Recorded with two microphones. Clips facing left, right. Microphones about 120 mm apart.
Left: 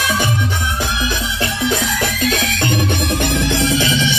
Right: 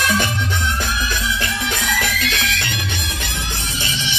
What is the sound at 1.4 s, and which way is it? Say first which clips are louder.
Music: left 5 dB; 35° left (ahead or behind).